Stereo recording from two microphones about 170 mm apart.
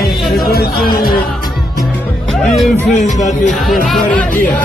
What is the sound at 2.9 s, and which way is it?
Speech, 45° left (ahead or behind).